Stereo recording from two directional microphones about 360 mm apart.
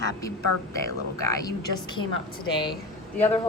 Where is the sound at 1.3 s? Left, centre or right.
Centre.